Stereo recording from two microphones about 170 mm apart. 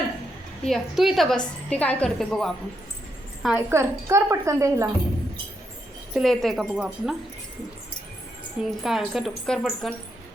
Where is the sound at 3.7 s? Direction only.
15° right (ahead or behind).